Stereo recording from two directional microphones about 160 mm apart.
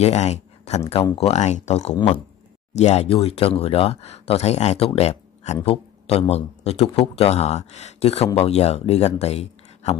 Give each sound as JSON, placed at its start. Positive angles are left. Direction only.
{"t": 0.0, "sound": "speech", "side_deg": 45}